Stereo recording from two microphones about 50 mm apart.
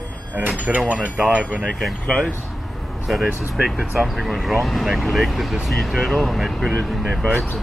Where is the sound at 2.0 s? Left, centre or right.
Centre.